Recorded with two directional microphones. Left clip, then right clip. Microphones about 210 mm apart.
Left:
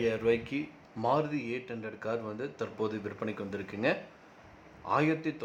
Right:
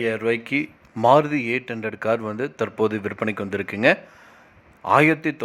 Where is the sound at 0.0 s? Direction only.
25° right (ahead or behind).